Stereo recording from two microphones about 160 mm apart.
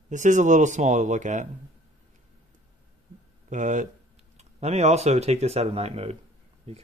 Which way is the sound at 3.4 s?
50° right (ahead or behind).